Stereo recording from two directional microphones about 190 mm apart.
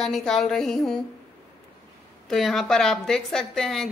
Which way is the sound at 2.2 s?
Centre (ahead or behind).